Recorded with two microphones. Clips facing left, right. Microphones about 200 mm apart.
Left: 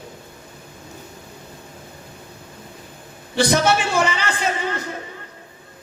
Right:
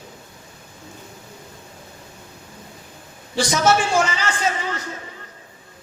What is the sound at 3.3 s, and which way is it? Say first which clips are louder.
A man's voice: left 1 dB; 60° left (ahead or behind).